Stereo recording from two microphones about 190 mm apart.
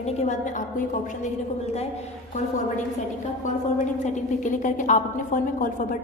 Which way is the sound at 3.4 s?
40° left (ahead or behind).